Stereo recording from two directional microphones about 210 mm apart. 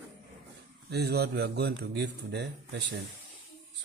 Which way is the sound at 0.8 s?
50° right (ahead or behind).